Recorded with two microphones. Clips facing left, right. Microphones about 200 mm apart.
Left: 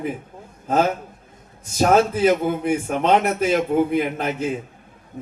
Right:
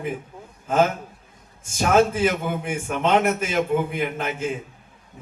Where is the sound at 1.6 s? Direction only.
40° left (ahead or behind).